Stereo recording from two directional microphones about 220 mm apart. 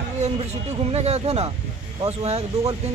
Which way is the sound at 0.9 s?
30° right (ahead or behind).